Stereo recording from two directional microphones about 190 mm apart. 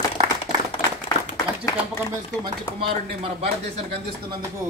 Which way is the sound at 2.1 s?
20° right (ahead or behind).